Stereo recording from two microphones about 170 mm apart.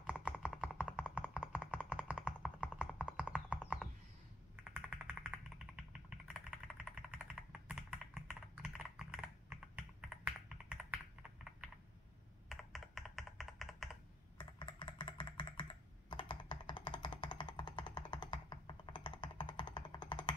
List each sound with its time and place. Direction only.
0.0 s tap: 10° right (ahead or behind)
4.6 s a sound: 10° right (ahead or behind)
5.9 s computer keyboard: 5° right (ahead or behind)
12.4 s computer keyboard: centre (ahead or behind)
14.4 s typing: 30° left (ahead or behind)
16.1 s music: 30° left (ahead or behind)